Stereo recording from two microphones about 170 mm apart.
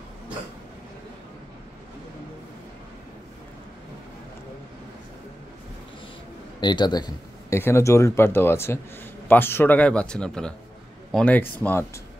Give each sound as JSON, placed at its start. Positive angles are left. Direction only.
{"t": 6.6, "sound": "speech", "side_deg": 25}